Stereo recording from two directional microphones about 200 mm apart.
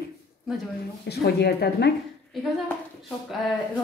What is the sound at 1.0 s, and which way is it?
Speech, 55° left (ahead or behind).